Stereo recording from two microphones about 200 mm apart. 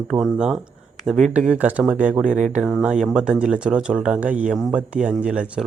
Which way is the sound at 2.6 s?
Centre (ahead or behind).